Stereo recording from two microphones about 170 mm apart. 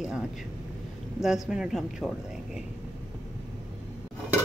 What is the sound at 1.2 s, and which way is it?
Speech, 5° right (ahead or behind).